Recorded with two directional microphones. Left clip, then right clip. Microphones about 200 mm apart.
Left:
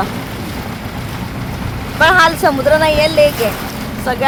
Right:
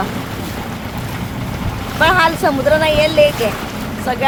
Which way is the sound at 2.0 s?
30° left (ahead or behind).